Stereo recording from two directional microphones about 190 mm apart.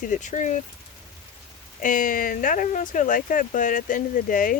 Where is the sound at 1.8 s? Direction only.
45° left (ahead or behind).